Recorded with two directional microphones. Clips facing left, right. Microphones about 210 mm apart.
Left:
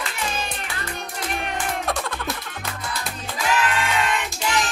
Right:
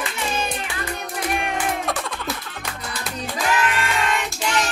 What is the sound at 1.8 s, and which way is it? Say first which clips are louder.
Music: even; centre (ahead or behind).